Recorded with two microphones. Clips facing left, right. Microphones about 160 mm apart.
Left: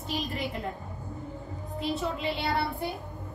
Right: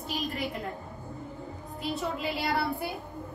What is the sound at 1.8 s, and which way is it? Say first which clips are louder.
A woman's voice: left 1 dB; centre (ahead or behind).